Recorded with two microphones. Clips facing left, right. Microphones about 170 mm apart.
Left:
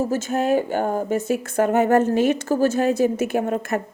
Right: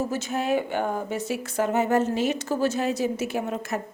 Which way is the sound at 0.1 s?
45° left (ahead or behind).